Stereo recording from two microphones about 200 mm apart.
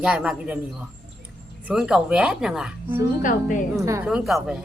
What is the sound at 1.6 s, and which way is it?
Speech, 5° right (ahead or behind).